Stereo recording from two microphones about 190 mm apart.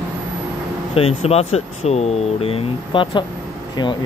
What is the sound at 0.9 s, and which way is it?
Speech, 30° left (ahead or behind).